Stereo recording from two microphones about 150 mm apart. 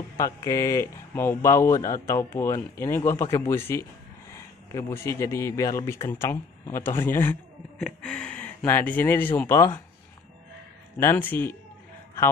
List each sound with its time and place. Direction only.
0.2 s speech: 20° left (ahead or behind)
11.0 s speech: 15° left (ahead or behind)